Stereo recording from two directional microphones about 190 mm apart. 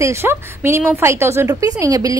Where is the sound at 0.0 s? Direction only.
15° right (ahead or behind).